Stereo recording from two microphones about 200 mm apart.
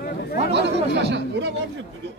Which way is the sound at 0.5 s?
60° right (ahead or behind).